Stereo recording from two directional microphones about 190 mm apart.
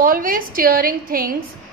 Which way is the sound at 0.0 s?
50° right (ahead or behind).